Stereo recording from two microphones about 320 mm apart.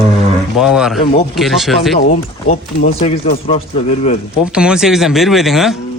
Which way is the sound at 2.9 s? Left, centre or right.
Centre.